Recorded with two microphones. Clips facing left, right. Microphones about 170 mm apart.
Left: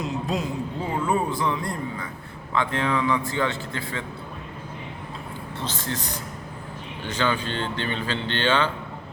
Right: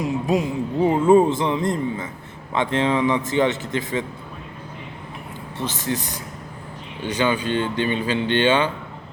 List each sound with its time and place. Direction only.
0.0 s speech: 15° right (ahead or behind)
5.5 s speech: 15° right (ahead or behind)